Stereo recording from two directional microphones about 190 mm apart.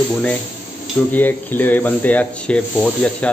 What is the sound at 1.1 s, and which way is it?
Speech, 10° left (ahead or behind).